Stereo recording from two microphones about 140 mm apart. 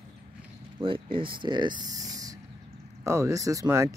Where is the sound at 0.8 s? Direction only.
40° right (ahead or behind).